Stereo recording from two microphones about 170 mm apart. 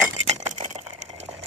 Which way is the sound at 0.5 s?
45° right (ahead or behind).